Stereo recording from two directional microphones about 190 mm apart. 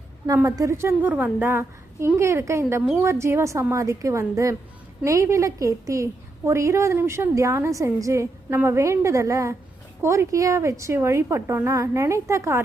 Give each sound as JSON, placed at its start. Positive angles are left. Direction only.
{"t": 0.3, "sound": "a woman's voice", "side_deg": -15}